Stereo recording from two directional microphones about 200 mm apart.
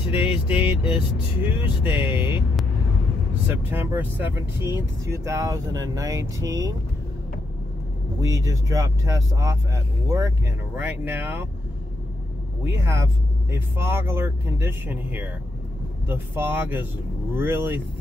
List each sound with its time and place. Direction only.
0.1 s speech: 10° right (ahead or behind)
3.4 s speech: 10° right (ahead or behind)
8.2 s speech: 15° right (ahead or behind)
12.6 s speech: 10° right (ahead or behind)